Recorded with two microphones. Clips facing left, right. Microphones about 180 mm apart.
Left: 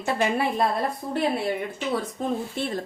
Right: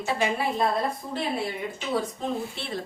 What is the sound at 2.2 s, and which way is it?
Speech, 50° left (ahead or behind).